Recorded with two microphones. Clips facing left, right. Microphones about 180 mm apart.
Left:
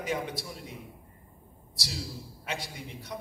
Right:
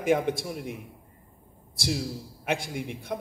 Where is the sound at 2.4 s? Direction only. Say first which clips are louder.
Right 8 dB; 55° right (ahead or behind).